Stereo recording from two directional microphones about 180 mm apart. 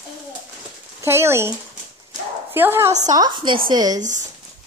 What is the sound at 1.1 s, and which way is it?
A woman's voice, 15° right (ahead or behind).